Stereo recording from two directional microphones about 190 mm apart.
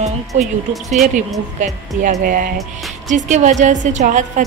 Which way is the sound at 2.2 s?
45° right (ahead or behind).